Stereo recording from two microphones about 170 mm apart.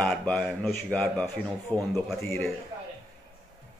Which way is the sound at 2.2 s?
15° left (ahead or behind).